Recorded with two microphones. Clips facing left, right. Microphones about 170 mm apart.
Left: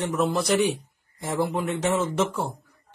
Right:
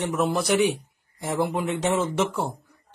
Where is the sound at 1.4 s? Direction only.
15° right (ahead or behind).